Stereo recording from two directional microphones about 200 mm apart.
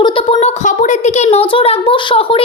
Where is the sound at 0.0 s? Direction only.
25° left (ahead or behind).